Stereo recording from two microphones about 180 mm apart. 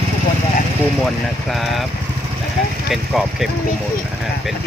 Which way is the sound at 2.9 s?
Centre (ahead or behind).